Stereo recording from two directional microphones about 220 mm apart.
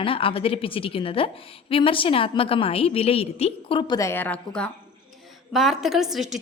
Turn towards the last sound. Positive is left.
turn(degrees=0)  # may be behind; listen again after turning